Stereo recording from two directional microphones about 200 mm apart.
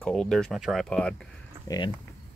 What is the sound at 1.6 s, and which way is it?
Speech, 20° left (ahead or behind).